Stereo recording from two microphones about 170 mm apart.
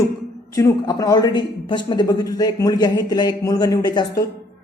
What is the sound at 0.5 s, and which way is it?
Speech, 20° left (ahead or behind).